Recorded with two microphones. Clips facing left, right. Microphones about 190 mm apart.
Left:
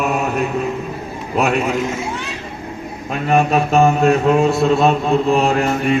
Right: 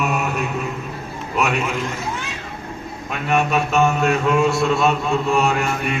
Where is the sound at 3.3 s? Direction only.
35° left (ahead or behind).